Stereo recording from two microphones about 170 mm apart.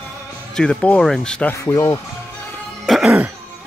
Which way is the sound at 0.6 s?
5° left (ahead or behind).